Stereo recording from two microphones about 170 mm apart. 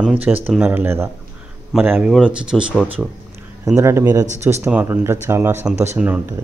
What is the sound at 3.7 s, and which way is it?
A man's voice, 15° right (ahead or behind).